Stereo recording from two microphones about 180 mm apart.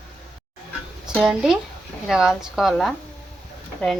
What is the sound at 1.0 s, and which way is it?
Speech, centre (ahead or behind).